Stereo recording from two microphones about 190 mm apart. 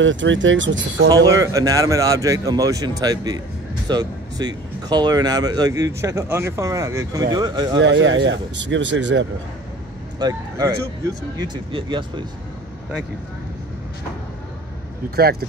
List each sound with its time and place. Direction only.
0.0 s speech: 80° right
1.4 s speech: 15° right (ahead or behind)
7.8 s speech: 75° right (ahead or behind)
10.1 s speech: 20° right (ahead or behind)
15.0 s speech: 55° right (ahead or behind)